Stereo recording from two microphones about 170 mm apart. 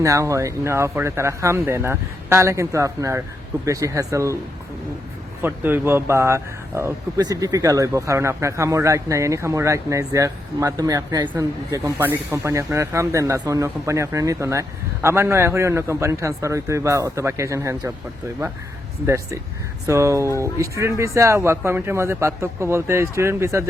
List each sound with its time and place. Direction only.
0.0 s speech: 20° right (ahead or behind)
5.4 s speech: 10° right (ahead or behind)
19.0 s speech: 15° right (ahead or behind)